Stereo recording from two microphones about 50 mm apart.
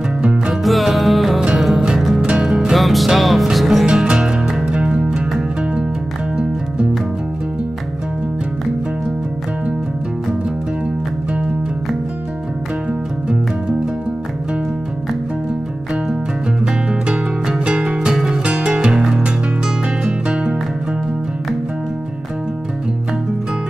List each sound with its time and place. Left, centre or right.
0.5 s music: centre
3.8 s music: right
6.3 s music: centre
17.1 s music: centre
18.4 s music: right
18.8 s music: centre